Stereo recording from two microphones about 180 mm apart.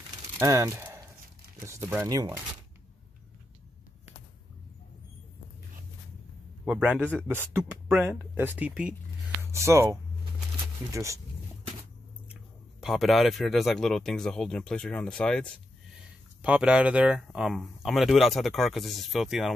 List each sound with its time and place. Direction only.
0.4 s speech: 15° right (ahead or behind)
6.6 s speech: 5° right (ahead or behind)
12.8 s speech: centre (ahead or behind)
16.4 s speech: 5° right (ahead or behind)